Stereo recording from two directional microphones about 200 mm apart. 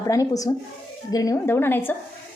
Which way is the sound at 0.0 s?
15° left (ahead or behind).